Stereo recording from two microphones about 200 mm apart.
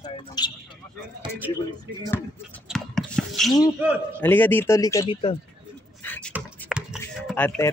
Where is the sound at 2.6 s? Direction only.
Centre (ahead or behind).